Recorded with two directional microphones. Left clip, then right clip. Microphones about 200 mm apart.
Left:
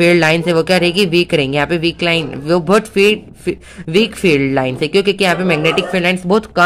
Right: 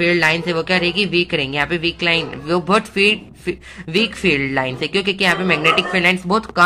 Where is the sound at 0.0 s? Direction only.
40° left (ahead or behind).